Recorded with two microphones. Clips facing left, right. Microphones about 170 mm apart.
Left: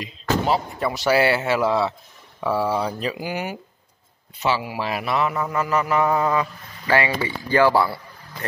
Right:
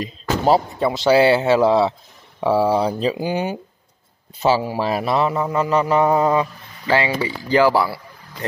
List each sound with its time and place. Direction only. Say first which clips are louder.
0.7 s a man's voice: right 5 dB; 25° right (ahead or behind)
4.4 s a man's voice: right 5 dB; 35° right (ahead or behind); by 8.0 s 10° right (ahead or behind)